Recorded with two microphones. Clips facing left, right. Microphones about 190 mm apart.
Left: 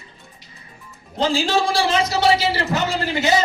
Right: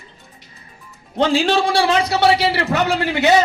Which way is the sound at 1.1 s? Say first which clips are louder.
Right 3 dB; 60° right (ahead or behind).